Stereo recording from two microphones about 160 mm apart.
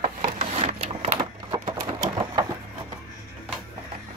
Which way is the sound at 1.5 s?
25° right (ahead or behind).